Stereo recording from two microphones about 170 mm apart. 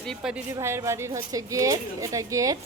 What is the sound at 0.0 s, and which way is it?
Speech, centre (ahead or behind).